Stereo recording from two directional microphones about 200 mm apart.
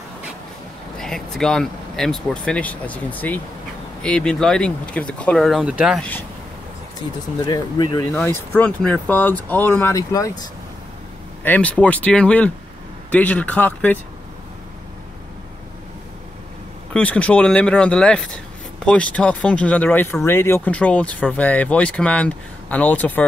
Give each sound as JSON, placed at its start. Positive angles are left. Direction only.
{"t": 0.9, "sound": "speech", "side_deg": 0}
{"t": 7.3, "sound": "speech", "side_deg": 20}
{"t": 8.1, "sound": "speech", "side_deg": 10}
{"t": 11.4, "sound": "speech", "side_deg": 10}
{"t": 16.9, "sound": "speech", "side_deg": 5}